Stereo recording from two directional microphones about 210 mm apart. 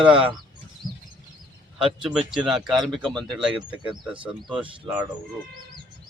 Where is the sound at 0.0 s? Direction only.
5° right (ahead or behind).